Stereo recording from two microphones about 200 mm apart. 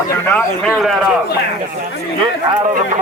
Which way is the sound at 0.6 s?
Centre (ahead or behind).